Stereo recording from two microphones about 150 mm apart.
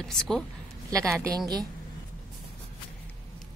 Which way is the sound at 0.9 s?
20° right (ahead or behind).